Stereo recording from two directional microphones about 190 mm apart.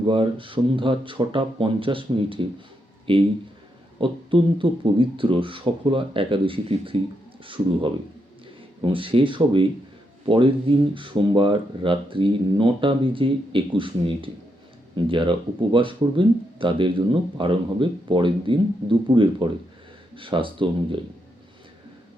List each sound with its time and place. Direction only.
0.1 s speech: 25° right (ahead or behind)